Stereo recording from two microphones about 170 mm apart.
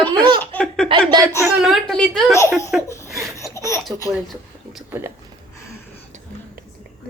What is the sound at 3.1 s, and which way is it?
Laughter, centre (ahead or behind).